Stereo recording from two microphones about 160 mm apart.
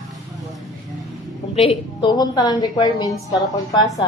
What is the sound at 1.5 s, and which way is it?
Speech, 40° left (ahead or behind).